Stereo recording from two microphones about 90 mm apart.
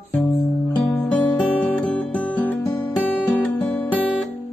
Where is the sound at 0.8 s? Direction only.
15° left (ahead or behind).